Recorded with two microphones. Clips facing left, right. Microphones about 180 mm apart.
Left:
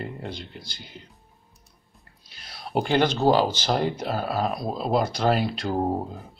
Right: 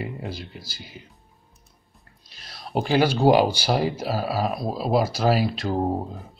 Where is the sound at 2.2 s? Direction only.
Centre (ahead or behind).